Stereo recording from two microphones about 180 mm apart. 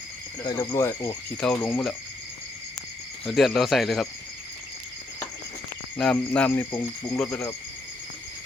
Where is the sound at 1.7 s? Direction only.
Centre (ahead or behind).